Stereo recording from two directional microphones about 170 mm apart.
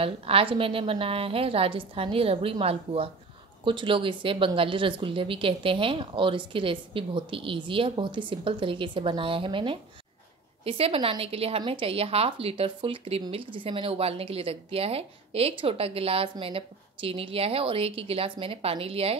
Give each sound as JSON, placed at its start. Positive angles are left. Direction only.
{"t": 0.0, "sound": "speech", "side_deg": -30}